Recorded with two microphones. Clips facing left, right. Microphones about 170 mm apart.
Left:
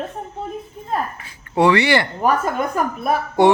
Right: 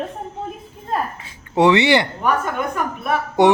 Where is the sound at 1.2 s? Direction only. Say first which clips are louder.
Right 1 dB; 20° right (ahead or behind).